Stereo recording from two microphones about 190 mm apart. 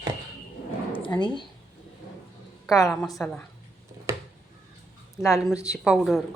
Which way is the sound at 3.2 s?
5° left (ahead or behind).